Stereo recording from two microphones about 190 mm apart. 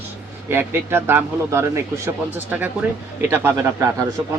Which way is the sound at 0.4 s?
10° right (ahead or behind).